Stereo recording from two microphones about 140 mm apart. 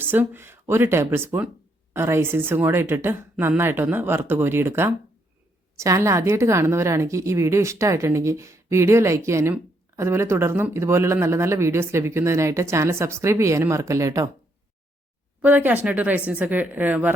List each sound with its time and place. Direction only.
0.0 s a woman's voice: 15° right (ahead or behind)
15.4 s speech: 10° right (ahead or behind)